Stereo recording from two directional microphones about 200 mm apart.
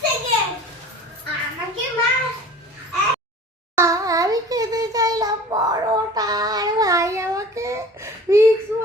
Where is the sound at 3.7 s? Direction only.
15° right (ahead or behind).